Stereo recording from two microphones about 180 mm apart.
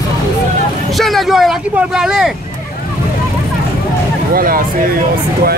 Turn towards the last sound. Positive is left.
turn(degrees=-55)  # may be behind; listen again after turning